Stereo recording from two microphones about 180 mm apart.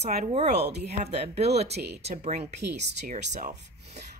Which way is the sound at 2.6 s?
70° right (ahead or behind).